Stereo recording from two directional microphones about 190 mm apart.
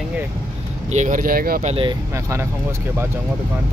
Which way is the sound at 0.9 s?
40° right (ahead or behind).